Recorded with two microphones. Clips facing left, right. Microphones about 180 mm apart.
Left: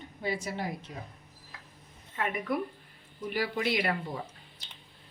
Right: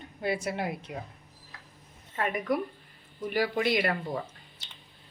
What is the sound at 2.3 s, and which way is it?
Speech, 45° right (ahead or behind).